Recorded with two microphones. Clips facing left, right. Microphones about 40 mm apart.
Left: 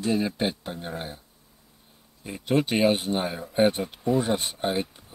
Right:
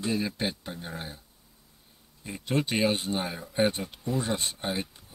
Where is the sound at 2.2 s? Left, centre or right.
Centre.